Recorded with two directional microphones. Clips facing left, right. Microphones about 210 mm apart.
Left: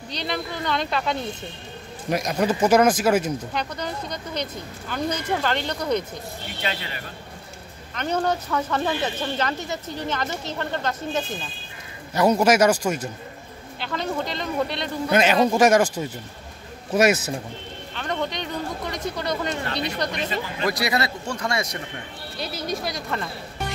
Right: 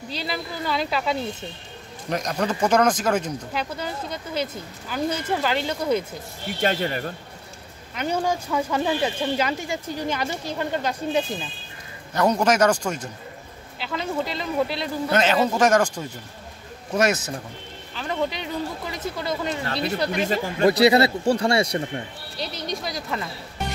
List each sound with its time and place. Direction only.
0.1 s speech: 5° right (ahead or behind)
2.0 s speech: 10° left (ahead or behind)
3.5 s speech: 5° right (ahead or behind)
6.6 s speech: 45° right (ahead or behind)
7.9 s speech: 10° right (ahead or behind)
12.1 s speech: 10° left (ahead or behind)
13.7 s speech: 5° right (ahead or behind)
15.0 s speech: 10° left (ahead or behind)
17.9 s speech: 5° right (ahead or behind)
20.2 s speech: 45° right (ahead or behind)
20.6 s speech: 30° right (ahead or behind)
22.4 s speech: 5° left (ahead or behind)